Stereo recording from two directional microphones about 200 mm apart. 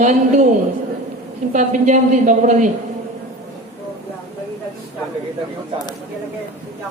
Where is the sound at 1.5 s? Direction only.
40° right (ahead or behind).